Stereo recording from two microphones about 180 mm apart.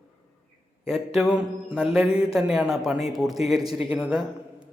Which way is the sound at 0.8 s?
Centre (ahead or behind).